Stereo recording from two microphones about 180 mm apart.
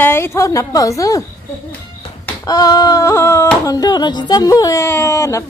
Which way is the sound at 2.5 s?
20° left (ahead or behind).